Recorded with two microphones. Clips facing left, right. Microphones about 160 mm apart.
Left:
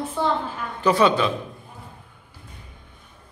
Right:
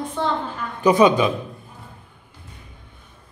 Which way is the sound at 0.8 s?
15° right (ahead or behind).